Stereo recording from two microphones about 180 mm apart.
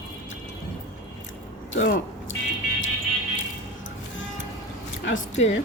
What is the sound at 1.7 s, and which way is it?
Speech, 55° left (ahead or behind).